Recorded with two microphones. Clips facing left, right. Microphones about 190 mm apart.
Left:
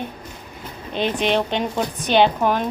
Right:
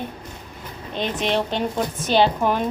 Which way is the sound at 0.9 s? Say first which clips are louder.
Left 3 dB; 30° left (ahead or behind).